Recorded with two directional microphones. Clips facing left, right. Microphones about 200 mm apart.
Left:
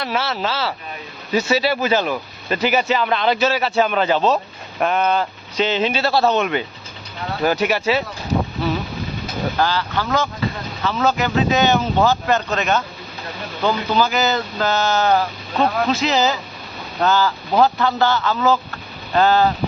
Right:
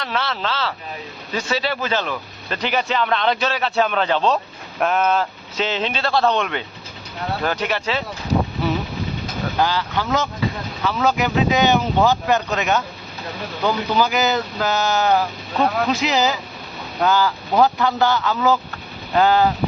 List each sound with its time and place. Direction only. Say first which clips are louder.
0.0 s speech: left 2 dB; 10° left (ahead or behind)
9.6 s speech: right 1 dB; 15° right (ahead or behind)